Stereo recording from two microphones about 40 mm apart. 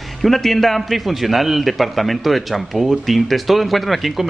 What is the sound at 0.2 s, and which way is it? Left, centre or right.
A man's voice, centre.